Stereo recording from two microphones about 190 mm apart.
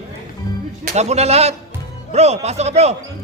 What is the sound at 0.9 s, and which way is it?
A man's voice, 35° right (ahead or behind).